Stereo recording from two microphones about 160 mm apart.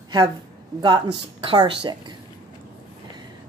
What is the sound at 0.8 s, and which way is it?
Speech, 30° right (ahead or behind).